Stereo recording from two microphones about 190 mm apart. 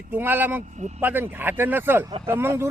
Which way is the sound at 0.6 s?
40° right (ahead or behind).